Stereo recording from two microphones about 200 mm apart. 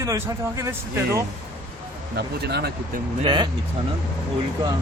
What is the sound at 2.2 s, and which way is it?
Speech, 55° right (ahead or behind).